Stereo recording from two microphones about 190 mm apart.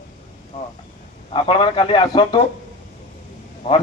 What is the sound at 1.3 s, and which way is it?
A man's voice, 25° left (ahead or behind).